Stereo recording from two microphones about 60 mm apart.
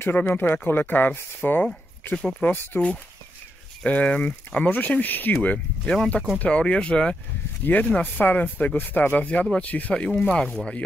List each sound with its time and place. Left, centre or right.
0.0 s speech: left
3.8 s speech: left